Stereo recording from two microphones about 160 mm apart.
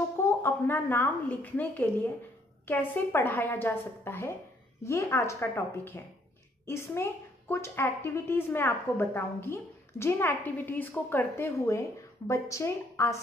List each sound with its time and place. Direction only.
0.2 s a woman's voice: 15° left (ahead or behind)